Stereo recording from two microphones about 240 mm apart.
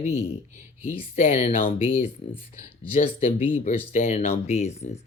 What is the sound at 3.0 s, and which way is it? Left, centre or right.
A man's voice, left.